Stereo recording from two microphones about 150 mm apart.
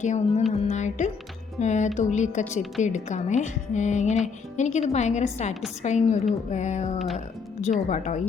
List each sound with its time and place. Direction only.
0.0 s a woman's voice: 50° left (ahead or behind)